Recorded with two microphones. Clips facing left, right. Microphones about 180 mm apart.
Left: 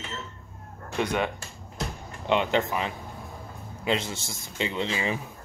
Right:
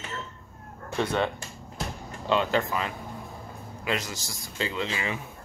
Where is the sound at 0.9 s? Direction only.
10° left (ahead or behind).